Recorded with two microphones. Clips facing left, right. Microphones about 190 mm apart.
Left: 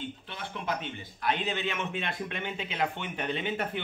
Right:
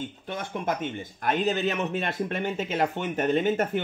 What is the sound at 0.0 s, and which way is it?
A man's voice, 45° right (ahead or behind).